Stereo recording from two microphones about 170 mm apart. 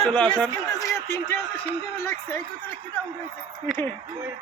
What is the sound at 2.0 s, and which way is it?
Speech, 15° left (ahead or behind).